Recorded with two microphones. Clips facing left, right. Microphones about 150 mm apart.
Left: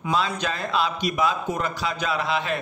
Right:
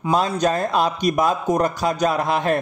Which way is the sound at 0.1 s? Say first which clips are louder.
Right 6 dB; 45° right (ahead or behind).